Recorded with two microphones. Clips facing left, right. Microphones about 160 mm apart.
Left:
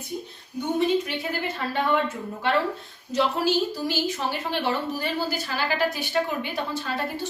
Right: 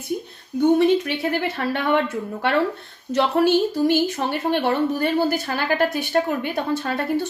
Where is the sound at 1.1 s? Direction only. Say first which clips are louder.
Right 6 dB; 70° right (ahead or behind).